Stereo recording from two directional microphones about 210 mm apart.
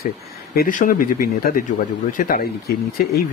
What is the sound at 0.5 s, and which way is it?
Speech, 40° left (ahead or behind).